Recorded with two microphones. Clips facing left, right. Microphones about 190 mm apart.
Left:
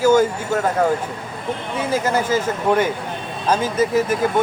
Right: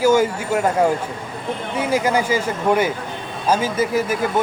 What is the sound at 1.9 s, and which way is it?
Speech, 10° right (ahead or behind).